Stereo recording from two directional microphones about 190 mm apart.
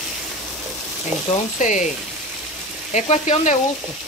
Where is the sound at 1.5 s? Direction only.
40° left (ahead or behind).